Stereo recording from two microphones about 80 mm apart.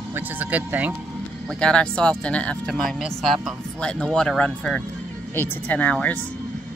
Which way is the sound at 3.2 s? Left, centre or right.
Centre.